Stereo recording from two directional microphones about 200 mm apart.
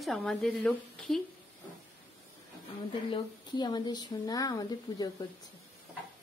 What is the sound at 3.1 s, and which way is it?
Speech, 20° left (ahead or behind).